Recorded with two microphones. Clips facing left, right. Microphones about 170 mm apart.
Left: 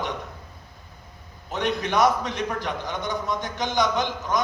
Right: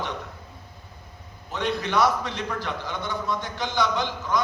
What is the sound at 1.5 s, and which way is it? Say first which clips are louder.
A man's voice: left 1 dB; 20° left (ahead or behind).